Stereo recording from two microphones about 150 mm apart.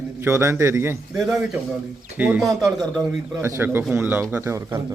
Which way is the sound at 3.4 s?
15° right (ahead or behind).